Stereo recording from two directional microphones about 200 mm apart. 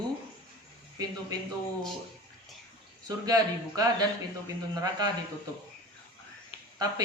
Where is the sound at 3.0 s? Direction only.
20° right (ahead or behind).